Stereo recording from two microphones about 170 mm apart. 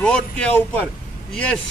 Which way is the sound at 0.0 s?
5° left (ahead or behind).